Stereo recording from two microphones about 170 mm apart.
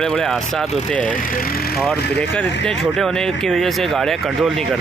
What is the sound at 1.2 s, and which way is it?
Speech, 55° left (ahead or behind).